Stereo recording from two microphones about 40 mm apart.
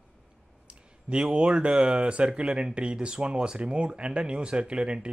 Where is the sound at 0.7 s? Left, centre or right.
Right.